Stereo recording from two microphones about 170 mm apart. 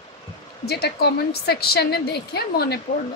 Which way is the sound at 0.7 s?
70° left (ahead or behind).